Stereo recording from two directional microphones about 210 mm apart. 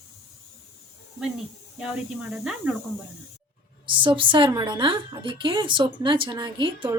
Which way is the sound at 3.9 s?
25° right (ahead or behind).